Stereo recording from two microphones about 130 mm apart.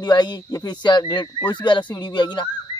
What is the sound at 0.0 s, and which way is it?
Speech, 35° left (ahead or behind).